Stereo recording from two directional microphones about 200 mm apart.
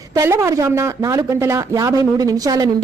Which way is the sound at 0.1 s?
15° right (ahead or behind).